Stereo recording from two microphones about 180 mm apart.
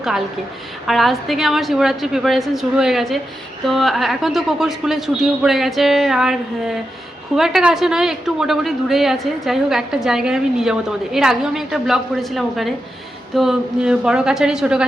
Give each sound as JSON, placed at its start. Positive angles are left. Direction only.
{"t": 0.9, "sound": "a woman's voice", "side_deg": 0}